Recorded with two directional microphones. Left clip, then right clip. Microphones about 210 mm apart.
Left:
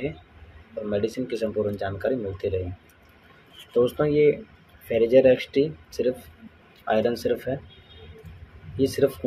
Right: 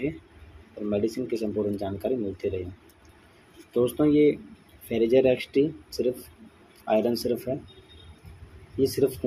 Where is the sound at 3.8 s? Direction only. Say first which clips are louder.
Left 1 dB; 45° right (ahead or behind).